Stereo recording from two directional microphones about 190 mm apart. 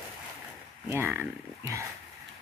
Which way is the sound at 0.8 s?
10° right (ahead or behind).